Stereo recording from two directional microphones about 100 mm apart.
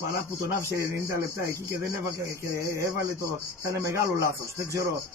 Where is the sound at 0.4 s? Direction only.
30° right (ahead or behind).